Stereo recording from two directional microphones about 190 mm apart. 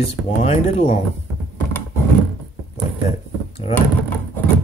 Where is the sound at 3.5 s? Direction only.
30° left (ahead or behind).